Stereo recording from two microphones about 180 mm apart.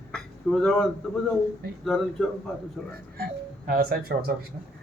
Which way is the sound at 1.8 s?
Centre (ahead or behind).